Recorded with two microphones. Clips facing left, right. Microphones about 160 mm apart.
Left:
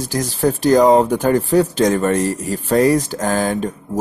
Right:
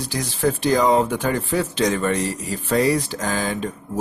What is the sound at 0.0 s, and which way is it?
Speech, 45° left (ahead or behind).